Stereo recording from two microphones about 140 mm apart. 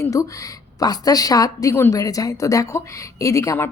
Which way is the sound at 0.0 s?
25° left (ahead or behind).